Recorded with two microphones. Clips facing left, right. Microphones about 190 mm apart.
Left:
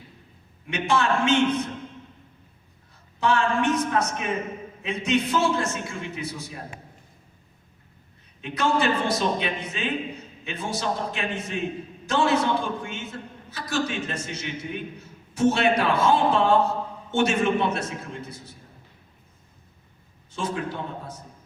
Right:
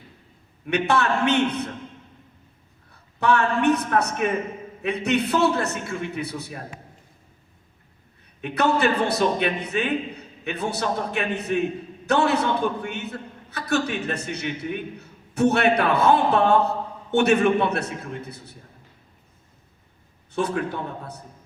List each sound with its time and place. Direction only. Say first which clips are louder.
0.7 s a man's voice: right 2 dB; 60° right (ahead or behind)
3.2 s a man's voice: right 2 dB; 60° right (ahead or behind)
8.4 s a man's voice: right 3 dB; 60° right (ahead or behind)
20.3 s a man's voice: right 4 dB; 60° right (ahead or behind)